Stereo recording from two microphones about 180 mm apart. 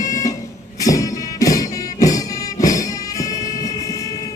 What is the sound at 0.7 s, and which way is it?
Music, 20° left (ahead or behind).